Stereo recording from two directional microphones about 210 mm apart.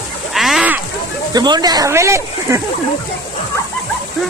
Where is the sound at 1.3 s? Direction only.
20° right (ahead or behind).